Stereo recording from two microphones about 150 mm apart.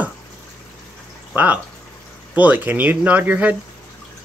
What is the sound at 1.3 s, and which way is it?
Speech, 10° right (ahead or behind).